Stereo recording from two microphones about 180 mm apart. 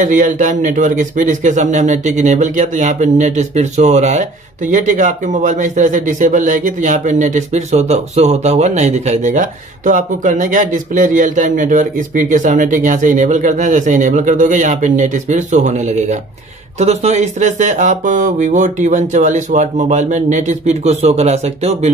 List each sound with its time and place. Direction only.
0.0 s speech: 45° right (ahead or behind)